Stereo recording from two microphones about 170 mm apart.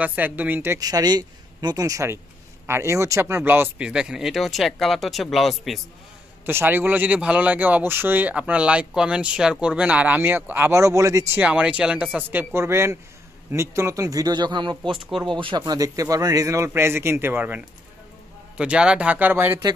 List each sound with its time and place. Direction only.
0.0 s speech: 10° right (ahead or behind)
6.4 s speech: 10° right (ahead or behind); by 14.8 s 25° right (ahead or behind)
15.0 s speech: centre (ahead or behind)
15.2 s speech: 30° right (ahead or behind); by 19.7 s 15° right (ahead or behind)